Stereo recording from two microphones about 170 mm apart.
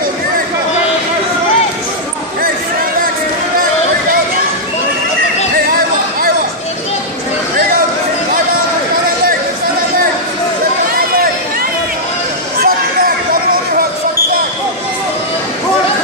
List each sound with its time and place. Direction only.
5.7 s music: 55° right (ahead or behind)
10.9 s chatter: 60° right (ahead or behind)
12.6 s a sound: 60° right (ahead or behind)